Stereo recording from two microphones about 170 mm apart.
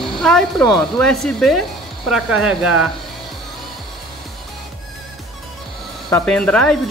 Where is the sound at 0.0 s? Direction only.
Centre (ahead or behind).